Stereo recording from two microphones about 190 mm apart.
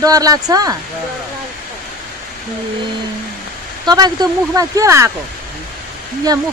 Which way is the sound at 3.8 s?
20° right (ahead or behind).